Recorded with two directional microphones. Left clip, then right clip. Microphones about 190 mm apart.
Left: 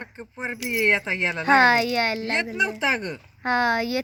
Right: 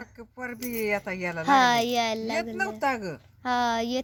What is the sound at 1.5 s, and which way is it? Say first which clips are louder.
Speech: left 3 dB; 10° right (ahead or behind).